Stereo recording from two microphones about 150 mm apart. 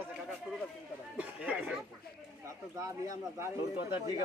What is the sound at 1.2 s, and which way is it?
Speech, 10° right (ahead or behind).